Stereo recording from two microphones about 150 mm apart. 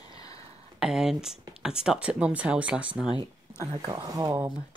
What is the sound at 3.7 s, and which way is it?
Speech, 25° right (ahead or behind).